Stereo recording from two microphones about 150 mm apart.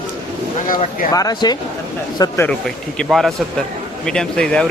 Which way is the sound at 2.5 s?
5° left (ahead or behind).